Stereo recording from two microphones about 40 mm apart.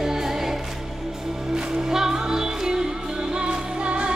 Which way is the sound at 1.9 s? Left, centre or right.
Centre.